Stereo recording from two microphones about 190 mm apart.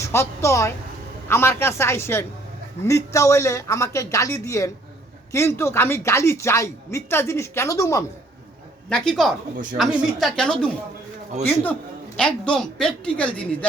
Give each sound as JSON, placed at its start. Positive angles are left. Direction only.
{"t": 0.0, "sound": "a woman's voice", "side_deg": 15}
{"t": 8.9, "sound": "a woman's voice", "side_deg": 5}